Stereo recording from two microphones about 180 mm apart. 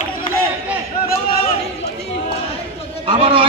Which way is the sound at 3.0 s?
30° right (ahead or behind).